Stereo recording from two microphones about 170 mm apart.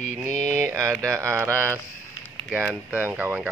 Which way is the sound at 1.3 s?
15° right (ahead or behind).